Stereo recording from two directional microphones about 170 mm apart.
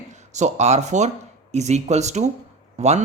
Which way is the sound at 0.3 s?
40° right (ahead or behind).